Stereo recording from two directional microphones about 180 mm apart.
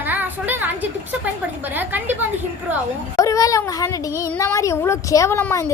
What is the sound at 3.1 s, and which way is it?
A woman's voice, 20° left (ahead or behind).